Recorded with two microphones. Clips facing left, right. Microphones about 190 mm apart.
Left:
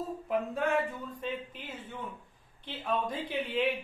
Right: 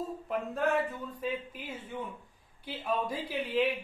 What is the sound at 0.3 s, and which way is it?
A man's voice, centre (ahead or behind).